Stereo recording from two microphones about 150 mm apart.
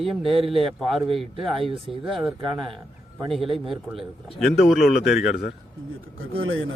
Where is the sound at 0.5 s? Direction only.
Centre (ahead or behind).